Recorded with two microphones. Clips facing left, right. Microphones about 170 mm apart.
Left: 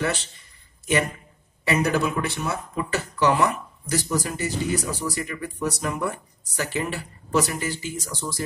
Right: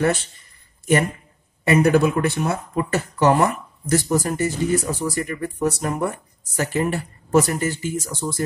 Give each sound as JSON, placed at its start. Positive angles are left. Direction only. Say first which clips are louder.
{"t": 1.6, "sound": "speech", "louder": "right 6 dB", "side_deg": -50}